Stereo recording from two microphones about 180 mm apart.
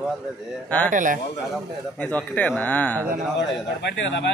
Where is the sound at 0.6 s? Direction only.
10° left (ahead or behind).